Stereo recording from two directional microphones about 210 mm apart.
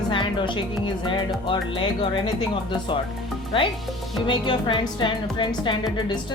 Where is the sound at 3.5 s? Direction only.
25° left (ahead or behind).